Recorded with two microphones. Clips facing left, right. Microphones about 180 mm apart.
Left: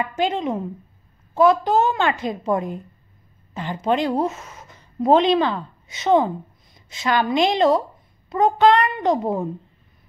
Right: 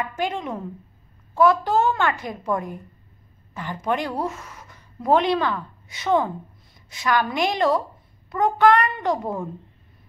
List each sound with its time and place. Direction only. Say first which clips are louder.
0.2 s a woman's voice: left 6 dB; 20° left (ahead or behind)